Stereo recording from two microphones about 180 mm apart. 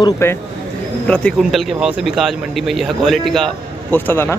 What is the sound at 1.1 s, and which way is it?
Speech, centre (ahead or behind).